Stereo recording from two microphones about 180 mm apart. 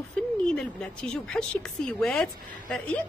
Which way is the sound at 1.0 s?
5° left (ahead or behind).